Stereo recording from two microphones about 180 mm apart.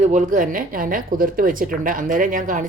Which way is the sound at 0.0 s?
40° right (ahead or behind).